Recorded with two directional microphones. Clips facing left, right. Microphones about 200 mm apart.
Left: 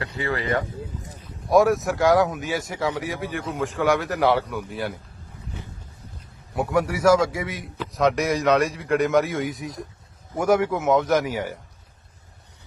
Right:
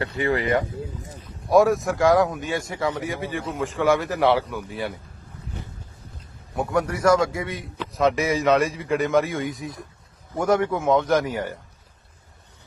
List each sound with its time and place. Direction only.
0.2 s speech: 15° right (ahead or behind)
1.5 s speech: centre (ahead or behind)
6.6 s a man's voice: 5° left (ahead or behind)